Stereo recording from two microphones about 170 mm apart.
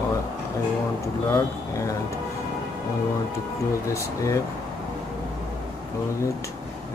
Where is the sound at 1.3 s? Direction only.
20° left (ahead or behind).